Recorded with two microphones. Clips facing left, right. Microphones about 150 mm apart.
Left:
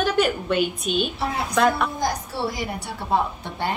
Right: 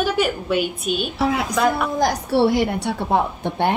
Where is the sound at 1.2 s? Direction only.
90° right.